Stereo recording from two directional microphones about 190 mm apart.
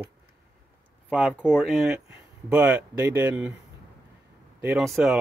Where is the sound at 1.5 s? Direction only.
Centre (ahead or behind).